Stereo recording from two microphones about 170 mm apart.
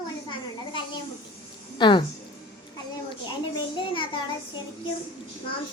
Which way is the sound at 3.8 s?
30° left (ahead or behind).